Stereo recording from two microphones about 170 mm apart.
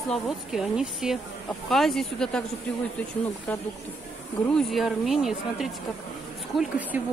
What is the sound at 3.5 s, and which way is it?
Speech, 10° left (ahead or behind).